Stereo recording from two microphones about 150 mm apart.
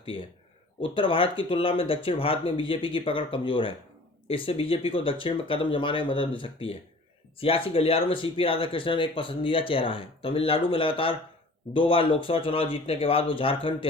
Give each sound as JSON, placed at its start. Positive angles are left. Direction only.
{"t": 0.0, "sound": "speech", "side_deg": 35}